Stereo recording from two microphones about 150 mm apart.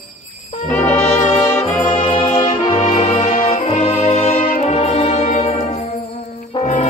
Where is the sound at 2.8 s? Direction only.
55° left (ahead or behind).